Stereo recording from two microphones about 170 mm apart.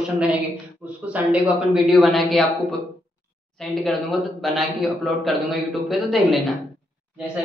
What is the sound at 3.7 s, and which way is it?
A man's voice, centre (ahead or behind).